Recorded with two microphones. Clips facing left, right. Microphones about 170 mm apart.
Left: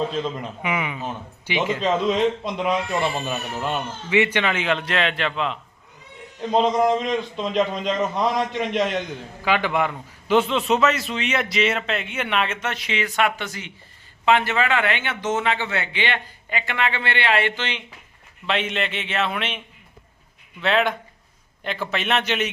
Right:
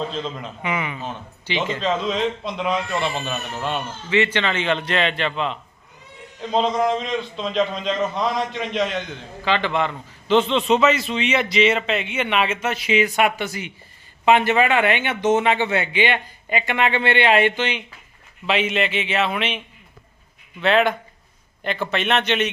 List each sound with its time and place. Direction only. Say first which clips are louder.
0.0 s a man's voice: left 2 dB; 10° left (ahead or behind)